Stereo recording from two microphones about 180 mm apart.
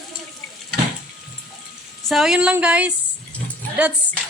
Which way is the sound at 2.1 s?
Centre (ahead or behind).